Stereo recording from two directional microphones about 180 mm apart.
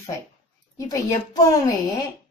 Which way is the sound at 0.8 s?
20° left (ahead or behind).